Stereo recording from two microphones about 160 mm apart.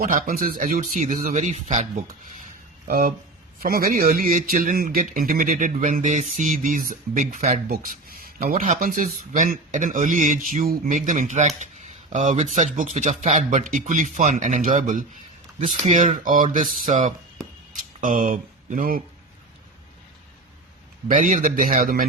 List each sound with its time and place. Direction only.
0.0 s a man's voice: 60° right (ahead or behind); by 1.9 s 45° right (ahead or behind)
2.8 s a man's voice: 65° right (ahead or behind)
21.1 s a man's voice: 55° right (ahead or behind)